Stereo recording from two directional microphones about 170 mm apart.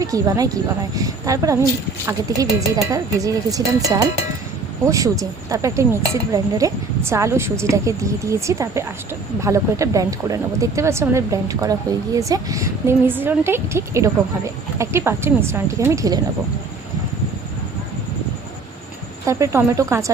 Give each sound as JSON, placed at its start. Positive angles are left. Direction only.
{"t": 0.0, "sound": "a woman's voice", "side_deg": -20}
{"t": 19.2, "sound": "a woman's voice", "side_deg": -20}